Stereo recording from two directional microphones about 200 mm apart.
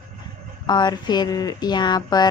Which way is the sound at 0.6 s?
20° left (ahead or behind).